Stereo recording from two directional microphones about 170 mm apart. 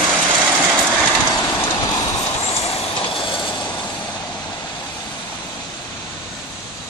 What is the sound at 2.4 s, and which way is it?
Vehicle, 35° left (ahead or behind).